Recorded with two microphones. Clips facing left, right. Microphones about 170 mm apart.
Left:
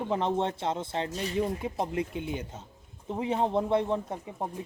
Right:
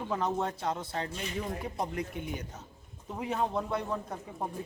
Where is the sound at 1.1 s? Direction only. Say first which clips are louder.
Left 6 dB; 35° left (ahead or behind).